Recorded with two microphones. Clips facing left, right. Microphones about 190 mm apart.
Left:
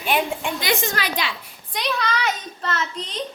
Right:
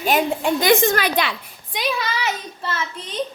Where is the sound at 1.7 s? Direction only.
5° right (ahead or behind).